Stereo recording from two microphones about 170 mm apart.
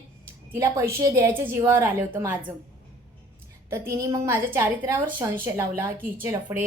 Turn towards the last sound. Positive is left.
turn(degrees=-20)  # may be behind; listen again after turning